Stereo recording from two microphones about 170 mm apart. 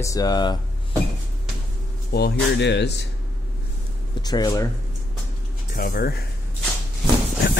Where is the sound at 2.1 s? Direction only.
70° left (ahead or behind).